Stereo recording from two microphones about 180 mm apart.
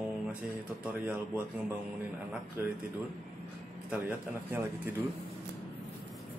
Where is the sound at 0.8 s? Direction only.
5° right (ahead or behind).